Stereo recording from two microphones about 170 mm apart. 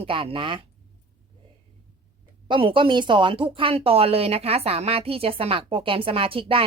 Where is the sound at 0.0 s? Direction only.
35° right (ahead or behind).